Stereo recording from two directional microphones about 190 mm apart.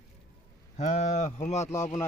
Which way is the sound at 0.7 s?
40° left (ahead or behind).